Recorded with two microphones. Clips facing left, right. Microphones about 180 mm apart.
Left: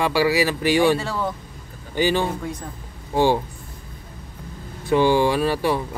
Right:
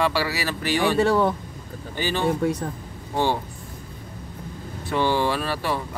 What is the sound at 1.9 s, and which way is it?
Speech, 15° left (ahead or behind).